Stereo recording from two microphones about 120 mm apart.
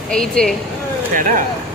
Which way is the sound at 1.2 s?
90° right.